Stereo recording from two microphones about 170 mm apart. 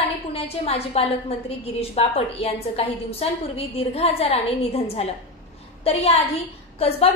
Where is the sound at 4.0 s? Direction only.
35° left (ahead or behind).